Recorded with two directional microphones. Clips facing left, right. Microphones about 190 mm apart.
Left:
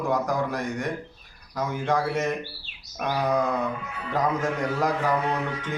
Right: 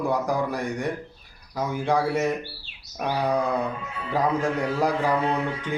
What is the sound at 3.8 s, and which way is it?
Speech, 25° right (ahead or behind).